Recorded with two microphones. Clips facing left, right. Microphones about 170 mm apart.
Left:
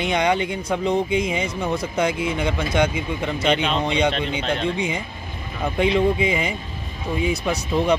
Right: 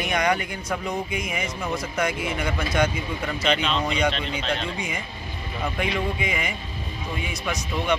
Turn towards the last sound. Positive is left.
turn(degrees=30)  # may be behind; listen again after turning